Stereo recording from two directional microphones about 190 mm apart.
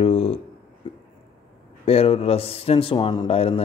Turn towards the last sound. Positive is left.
turn(degrees=30)  # may be behind; listen again after turning